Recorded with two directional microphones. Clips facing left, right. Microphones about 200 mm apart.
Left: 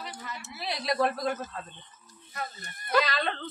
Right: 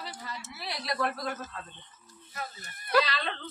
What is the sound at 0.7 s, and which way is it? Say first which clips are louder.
Speech: left 5 dB; 25° left (ahead or behind).